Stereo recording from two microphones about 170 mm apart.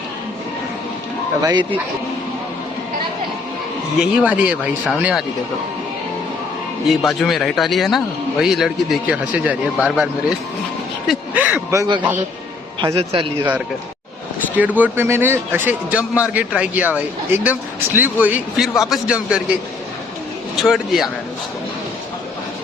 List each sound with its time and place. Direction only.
1.4 s speech: 20° right (ahead or behind)
4.0 s a man's voice: 10° right (ahead or behind)
6.8 s a man's voice: centre (ahead or behind)
14.5 s a man's voice: 10° right (ahead or behind)
20.6 s a man's voice: centre (ahead or behind)